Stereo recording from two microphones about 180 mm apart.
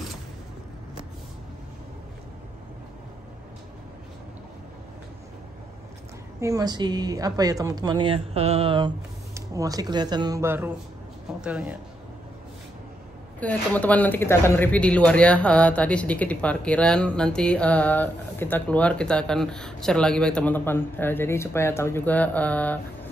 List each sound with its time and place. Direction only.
6.4 s speech: 20° right (ahead or behind)
9.3 s speech: 20° right (ahead or behind)
13.4 s speech: 10° left (ahead or behind)